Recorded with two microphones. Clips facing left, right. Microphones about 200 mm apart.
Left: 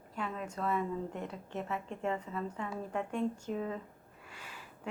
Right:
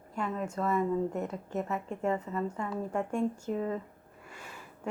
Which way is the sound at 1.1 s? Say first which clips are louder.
Right 6 dB; 45° right (ahead or behind).